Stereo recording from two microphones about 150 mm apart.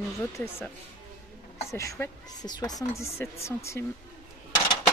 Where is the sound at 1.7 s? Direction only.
20° left (ahead or behind).